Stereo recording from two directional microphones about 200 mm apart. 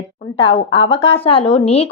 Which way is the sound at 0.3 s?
30° left (ahead or behind).